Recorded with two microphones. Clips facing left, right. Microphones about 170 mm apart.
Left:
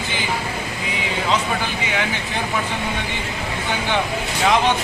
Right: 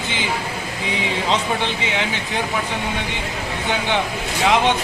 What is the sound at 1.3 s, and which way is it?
Speech, 25° right (ahead or behind).